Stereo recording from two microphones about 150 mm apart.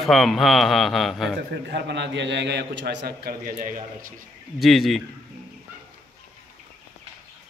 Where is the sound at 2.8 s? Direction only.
90° right.